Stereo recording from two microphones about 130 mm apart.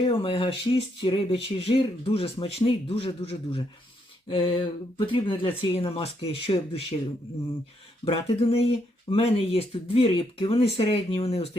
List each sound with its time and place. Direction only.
0.2 s speech: 40° left (ahead or behind)
8.0 s speech: 45° left (ahead or behind)